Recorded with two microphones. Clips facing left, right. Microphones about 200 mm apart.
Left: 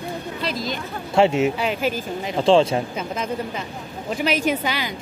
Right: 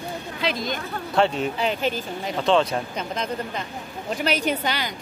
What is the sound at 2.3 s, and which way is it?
Speech, 30° left (ahead or behind).